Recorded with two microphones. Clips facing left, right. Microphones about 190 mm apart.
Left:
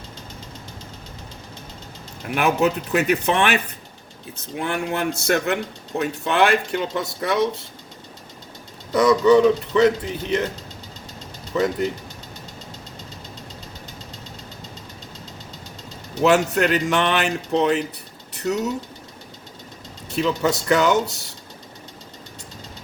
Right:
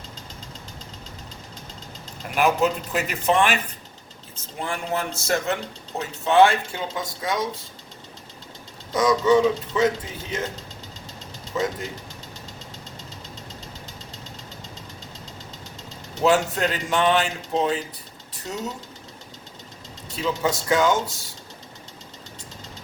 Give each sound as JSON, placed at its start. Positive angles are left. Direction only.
{"t": 2.3, "sound": "mechanisms", "side_deg": 65}
{"t": 8.9, "sound": "mechanisms", "side_deg": 65}
{"t": 16.2, "sound": "speech", "side_deg": 70}
{"t": 20.1, "sound": "speech", "side_deg": 70}